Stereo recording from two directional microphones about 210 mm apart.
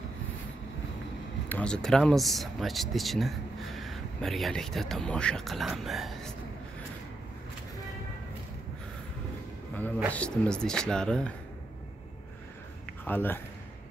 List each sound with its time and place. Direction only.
1.5 s speech: 5° left (ahead or behind)
10.1 s speech: 5° left (ahead or behind)
12.8 s a sound: 10° left (ahead or behind)